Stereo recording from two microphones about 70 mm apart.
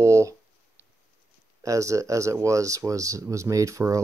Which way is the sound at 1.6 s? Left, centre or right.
Right.